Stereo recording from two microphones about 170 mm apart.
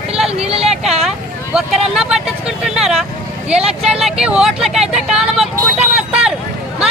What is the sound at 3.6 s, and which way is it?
Vehicle, 35° right (ahead or behind).